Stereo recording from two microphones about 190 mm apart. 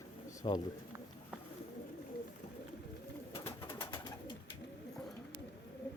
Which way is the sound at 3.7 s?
15° left (ahead or behind).